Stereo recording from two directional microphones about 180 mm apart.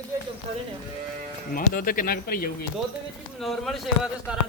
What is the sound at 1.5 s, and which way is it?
Speech, 50° left (ahead or behind).